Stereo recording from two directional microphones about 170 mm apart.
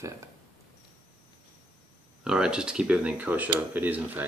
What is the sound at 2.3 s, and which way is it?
Speech, 5° right (ahead or behind).